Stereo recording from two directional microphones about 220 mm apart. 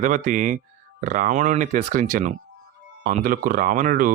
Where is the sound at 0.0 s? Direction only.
35° right (ahead or behind).